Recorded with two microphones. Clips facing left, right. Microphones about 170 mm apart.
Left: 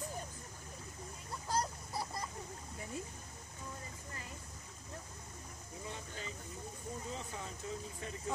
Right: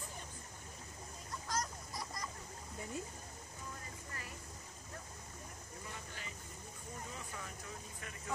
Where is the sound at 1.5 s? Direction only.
30° left (ahead or behind).